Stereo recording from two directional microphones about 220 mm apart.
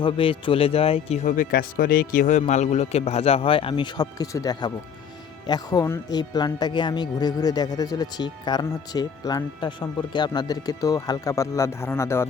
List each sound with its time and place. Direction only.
0.0 s speech: 25° left (ahead or behind)